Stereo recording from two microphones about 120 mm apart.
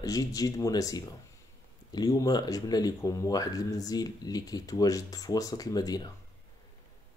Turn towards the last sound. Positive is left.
turn(degrees=35)  # may be behind; listen again after turning